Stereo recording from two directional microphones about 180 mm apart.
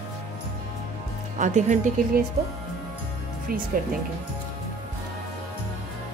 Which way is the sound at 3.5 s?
55° right (ahead or behind).